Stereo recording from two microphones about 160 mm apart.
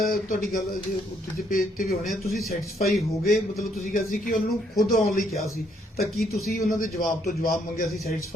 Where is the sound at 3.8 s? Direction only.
55° left (ahead or behind).